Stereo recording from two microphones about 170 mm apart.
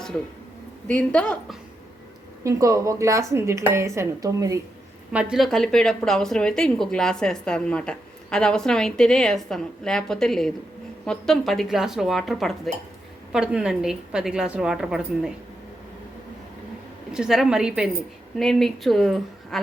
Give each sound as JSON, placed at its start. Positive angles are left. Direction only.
{"t": 0.9, "sound": "a woman's voice", "side_deg": 5}
{"t": 2.4, "sound": "speech", "side_deg": -20}
{"t": 5.1, "sound": "speech", "side_deg": 0}
{"t": 17.1, "sound": "speech", "side_deg": -5}